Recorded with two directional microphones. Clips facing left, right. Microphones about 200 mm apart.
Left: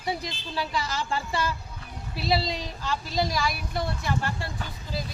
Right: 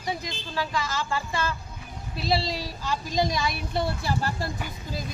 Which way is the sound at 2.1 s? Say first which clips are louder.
Even; centre (ahead or behind).